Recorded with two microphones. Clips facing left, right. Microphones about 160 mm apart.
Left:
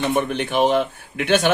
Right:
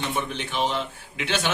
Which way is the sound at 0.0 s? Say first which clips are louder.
Left 8 dB; 55° left (ahead or behind).